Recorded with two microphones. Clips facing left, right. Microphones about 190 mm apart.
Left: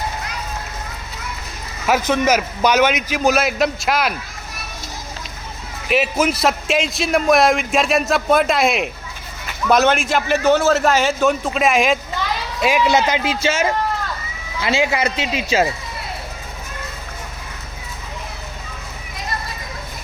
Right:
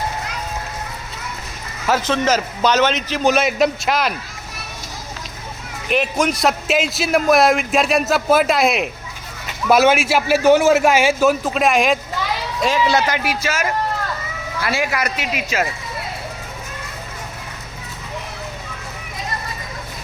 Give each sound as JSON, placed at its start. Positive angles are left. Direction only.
{"t": 1.9, "sound": "a man's voice", "side_deg": 15}
{"t": 5.9, "sound": "a man's voice", "side_deg": 5}
{"t": 12.6, "sound": "a man's voice", "side_deg": 15}